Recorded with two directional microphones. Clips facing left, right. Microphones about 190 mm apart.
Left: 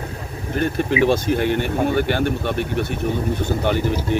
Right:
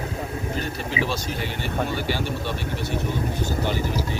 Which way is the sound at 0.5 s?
55° left (ahead or behind).